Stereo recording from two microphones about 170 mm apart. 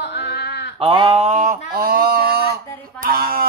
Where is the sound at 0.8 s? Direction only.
30° right (ahead or behind).